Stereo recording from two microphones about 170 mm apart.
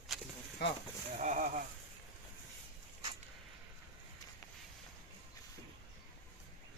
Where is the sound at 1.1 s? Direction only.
45° right (ahead or behind).